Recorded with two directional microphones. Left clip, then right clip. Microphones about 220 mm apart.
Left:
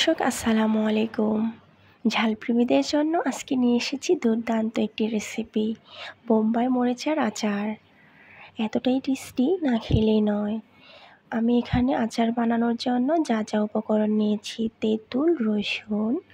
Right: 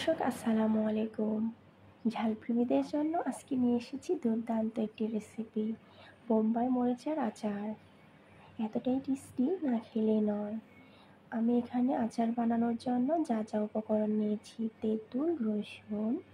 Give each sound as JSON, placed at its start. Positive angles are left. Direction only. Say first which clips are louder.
{"t": 0.0, "sound": "speech", "louder": "left 9 dB", "side_deg": 40}